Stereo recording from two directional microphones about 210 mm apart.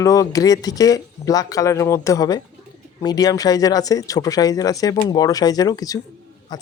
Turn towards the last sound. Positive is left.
turn(degrees=20)  # may be behind; listen again after turning